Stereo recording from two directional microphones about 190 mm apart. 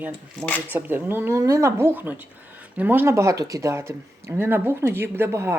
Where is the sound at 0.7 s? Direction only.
10° right (ahead or behind).